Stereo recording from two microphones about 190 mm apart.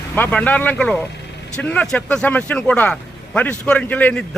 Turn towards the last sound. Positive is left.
turn(degrees=10)  # may be behind; listen again after turning